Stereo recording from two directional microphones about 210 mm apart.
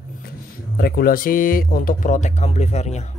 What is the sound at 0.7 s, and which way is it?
Speech, 45° left (ahead or behind).